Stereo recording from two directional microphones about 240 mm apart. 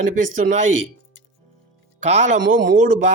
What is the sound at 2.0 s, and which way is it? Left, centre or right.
Speech, right.